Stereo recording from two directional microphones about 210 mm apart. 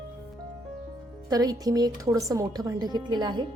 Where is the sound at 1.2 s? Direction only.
20° right (ahead or behind).